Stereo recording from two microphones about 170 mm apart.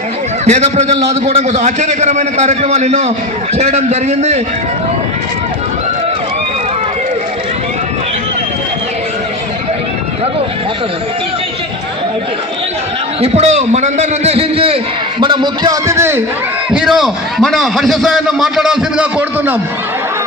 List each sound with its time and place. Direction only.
0.4 s a man's voice: 40° right (ahead or behind)
13.2 s a man's voice: 40° right (ahead or behind); by 16.2 s 15° right (ahead or behind)
16.7 s a man's voice: centre (ahead or behind)